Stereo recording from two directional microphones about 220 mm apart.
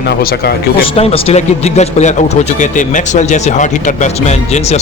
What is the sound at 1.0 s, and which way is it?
Speech, 25° left (ahead or behind).